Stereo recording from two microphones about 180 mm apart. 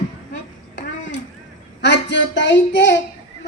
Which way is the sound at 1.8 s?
75° left (ahead or behind).